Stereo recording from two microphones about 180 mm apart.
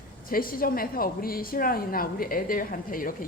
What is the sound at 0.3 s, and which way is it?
A woman's voice, 55° left (ahead or behind).